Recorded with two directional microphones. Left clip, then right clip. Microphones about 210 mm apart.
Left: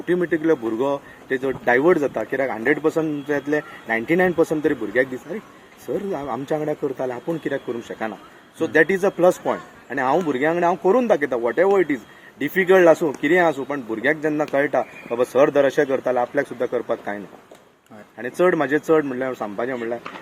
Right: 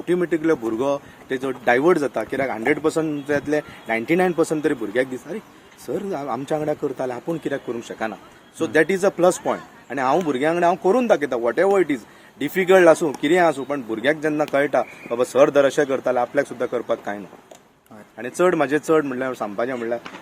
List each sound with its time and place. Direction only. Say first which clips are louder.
0.0 s speech: even; 5° right (ahead or behind)
18.2 s speech: even; 5° right (ahead or behind)